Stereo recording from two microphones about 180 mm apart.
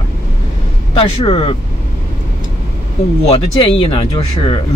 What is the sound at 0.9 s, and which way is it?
Speech, 30° left (ahead or behind).